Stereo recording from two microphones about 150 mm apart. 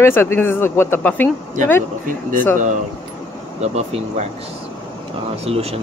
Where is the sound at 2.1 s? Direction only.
65° right (ahead or behind).